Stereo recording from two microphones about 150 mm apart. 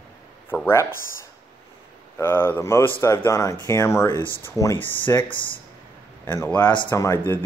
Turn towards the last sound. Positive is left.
turn(degrees=15)  # may be behind; listen again after turning